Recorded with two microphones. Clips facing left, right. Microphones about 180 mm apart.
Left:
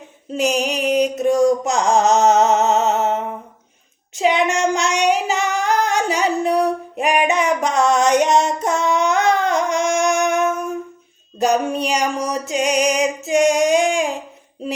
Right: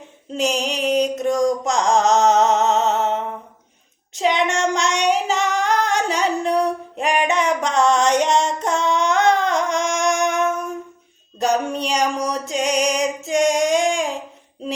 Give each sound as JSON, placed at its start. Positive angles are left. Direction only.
{"t": 0.3, "sound": "a sound", "side_deg": 10}
{"t": 4.1, "sound": "female singing", "side_deg": 10}
{"t": 11.3, "sound": "music", "side_deg": 10}